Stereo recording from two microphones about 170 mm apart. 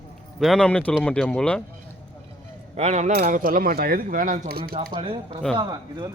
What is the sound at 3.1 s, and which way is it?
Speech, 60° right (ahead or behind).